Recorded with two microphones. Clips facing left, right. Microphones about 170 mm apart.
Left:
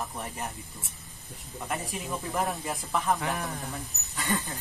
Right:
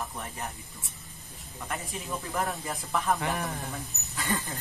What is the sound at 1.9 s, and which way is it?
Speech, 15° left (ahead or behind).